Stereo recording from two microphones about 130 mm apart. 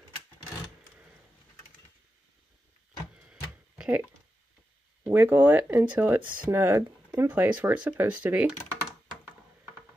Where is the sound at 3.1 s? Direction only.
10° right (ahead or behind).